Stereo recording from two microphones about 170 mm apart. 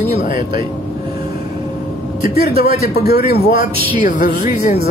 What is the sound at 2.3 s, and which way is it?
A man's voice, 65° left (ahead or behind).